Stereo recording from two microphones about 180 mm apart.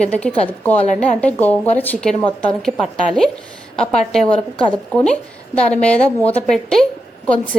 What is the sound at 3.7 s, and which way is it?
A woman's voice, 5° left (ahead or behind).